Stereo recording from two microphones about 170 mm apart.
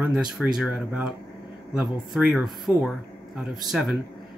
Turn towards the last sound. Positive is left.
turn(degrees=0)  # may be behind; listen again after turning